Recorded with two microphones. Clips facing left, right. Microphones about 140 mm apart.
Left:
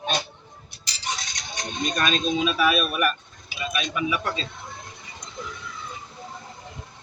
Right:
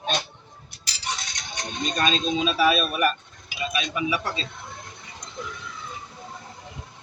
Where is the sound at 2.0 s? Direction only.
30° right (ahead or behind).